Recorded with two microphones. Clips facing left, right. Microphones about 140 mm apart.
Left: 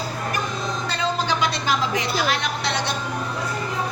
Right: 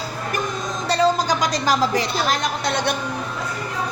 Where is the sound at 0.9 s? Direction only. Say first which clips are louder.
Right 8 dB; 40° right (ahead or behind).